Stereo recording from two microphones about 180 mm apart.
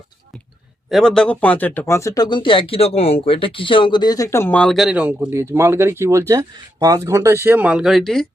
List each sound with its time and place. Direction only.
0.9 s speech: centre (ahead or behind)